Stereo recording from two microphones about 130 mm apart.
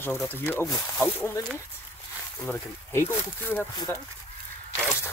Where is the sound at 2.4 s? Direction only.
20° left (ahead or behind).